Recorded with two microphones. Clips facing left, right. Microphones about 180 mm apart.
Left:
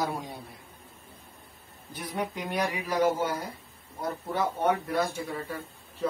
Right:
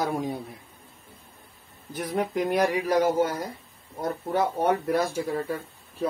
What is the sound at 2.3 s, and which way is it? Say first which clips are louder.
Speech: right 7 dB; 45° right (ahead or behind).